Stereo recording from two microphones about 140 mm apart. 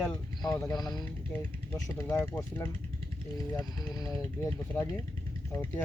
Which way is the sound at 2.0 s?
20° left (ahead or behind).